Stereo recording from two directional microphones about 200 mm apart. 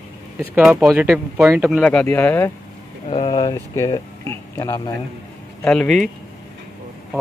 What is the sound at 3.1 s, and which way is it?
Speech, 25° left (ahead or behind).